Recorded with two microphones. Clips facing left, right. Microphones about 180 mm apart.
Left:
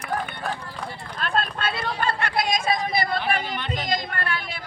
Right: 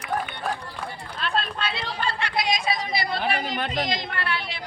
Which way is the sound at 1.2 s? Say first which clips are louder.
Left 2 dB; 50° left (ahead or behind).